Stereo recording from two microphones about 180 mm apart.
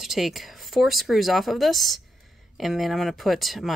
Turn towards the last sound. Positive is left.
turn(degrees=0)  # may be behind; listen again after turning